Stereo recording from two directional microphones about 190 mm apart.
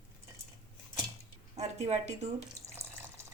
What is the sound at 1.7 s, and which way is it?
Speech, 35° right (ahead or behind).